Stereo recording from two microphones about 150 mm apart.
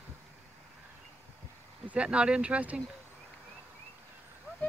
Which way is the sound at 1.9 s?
5° right (ahead or behind).